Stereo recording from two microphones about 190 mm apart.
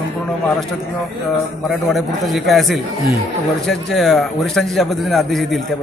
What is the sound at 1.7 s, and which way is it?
A man's voice, centre (ahead or behind).